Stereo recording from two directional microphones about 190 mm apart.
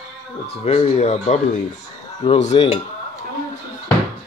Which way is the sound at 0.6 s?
35° left (ahead or behind).